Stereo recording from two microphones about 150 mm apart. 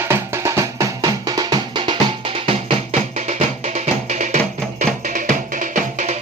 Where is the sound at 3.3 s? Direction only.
50° right (ahead or behind).